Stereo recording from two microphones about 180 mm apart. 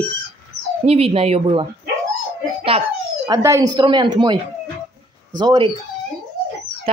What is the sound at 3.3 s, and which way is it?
Speech, 15° right (ahead or behind).